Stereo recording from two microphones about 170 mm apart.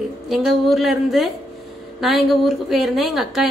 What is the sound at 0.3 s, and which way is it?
A woman's voice, centre (ahead or behind).